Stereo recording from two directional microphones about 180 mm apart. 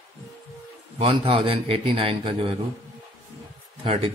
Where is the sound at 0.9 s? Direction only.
30° right (ahead or behind).